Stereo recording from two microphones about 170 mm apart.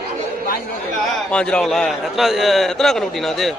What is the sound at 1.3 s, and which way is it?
A man's voice, 5° left (ahead or behind).